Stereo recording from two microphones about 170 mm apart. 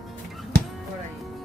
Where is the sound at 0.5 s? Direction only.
75° right (ahead or behind).